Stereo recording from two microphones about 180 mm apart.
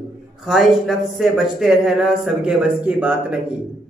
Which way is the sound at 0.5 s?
Centre (ahead or behind).